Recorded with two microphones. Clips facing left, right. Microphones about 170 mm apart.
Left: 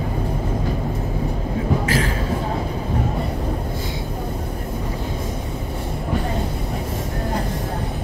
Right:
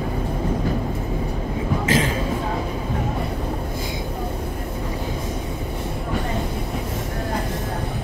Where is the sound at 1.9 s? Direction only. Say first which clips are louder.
Right 1 dB; 20° right (ahead or behind).